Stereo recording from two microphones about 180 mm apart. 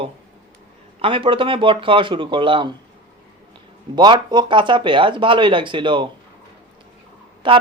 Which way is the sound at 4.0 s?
25° right (ahead or behind).